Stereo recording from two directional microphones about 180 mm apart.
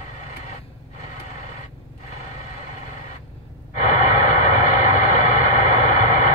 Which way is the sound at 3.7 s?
45° left (ahead or behind).